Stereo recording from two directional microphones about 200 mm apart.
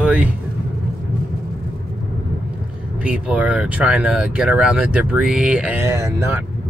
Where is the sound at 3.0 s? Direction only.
5° right (ahead or behind).